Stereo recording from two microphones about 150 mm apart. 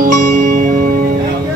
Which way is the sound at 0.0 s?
60° right (ahead or behind).